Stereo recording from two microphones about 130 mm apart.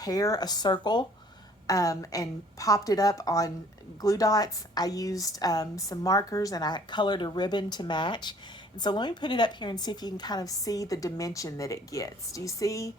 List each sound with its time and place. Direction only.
0.0 s a woman's voice: 30° left (ahead or behind)